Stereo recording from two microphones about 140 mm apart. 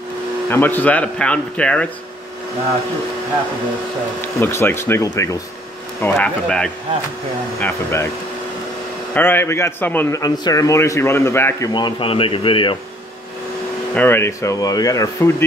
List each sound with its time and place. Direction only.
0.5 s speech: 15° left (ahead or behind)
4.4 s speech: 15° left (ahead or behind)
5.9 s speech: 10° left (ahead or behind)
7.6 s speech: 20° left (ahead or behind)
9.1 s speech: 15° left (ahead or behind)
10.2 s speech: 30° left (ahead or behind)
11.7 s a man's voice: 35° left (ahead or behind)
13.9 s speech: 15° left (ahead or behind)